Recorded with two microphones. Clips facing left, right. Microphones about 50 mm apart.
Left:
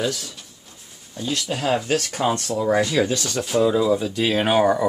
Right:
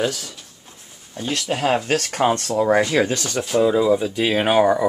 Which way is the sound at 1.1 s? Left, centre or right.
Right.